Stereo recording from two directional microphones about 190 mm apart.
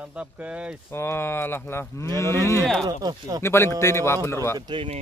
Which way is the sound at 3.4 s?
15° left (ahead or behind).